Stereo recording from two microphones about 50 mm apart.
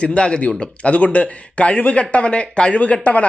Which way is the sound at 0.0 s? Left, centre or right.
Left.